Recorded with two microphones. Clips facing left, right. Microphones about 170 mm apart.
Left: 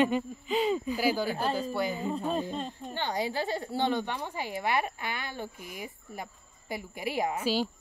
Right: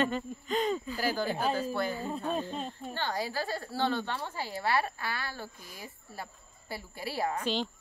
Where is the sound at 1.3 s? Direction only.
5° right (ahead or behind).